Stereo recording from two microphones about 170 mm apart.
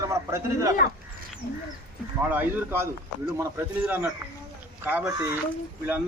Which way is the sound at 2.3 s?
10° right (ahead or behind).